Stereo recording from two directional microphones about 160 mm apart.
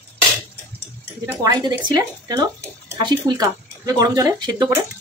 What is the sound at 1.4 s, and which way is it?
Speech, 25° right (ahead or behind).